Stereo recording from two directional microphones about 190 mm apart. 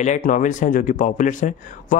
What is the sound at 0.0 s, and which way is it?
Speech, 40° left (ahead or behind).